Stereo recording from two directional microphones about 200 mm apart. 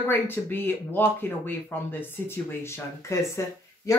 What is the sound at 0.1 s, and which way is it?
Speech, 10° left (ahead or behind).